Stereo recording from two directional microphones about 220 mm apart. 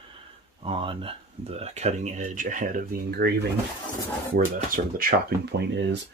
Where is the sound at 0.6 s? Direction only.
25° right (ahead or behind); by 3.3 s 45° right (ahead or behind).